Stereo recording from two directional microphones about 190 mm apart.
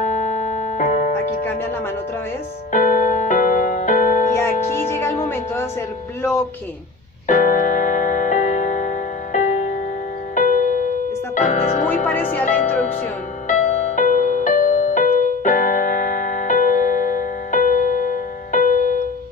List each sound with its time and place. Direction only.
0.0 s music: 40° left (ahead or behind)
2.7 s music: 40° left (ahead or behind)
4.4 s music: 10° left (ahead or behind)
7.2 s music: 45° left (ahead or behind)
13.5 s music: 40° left (ahead or behind)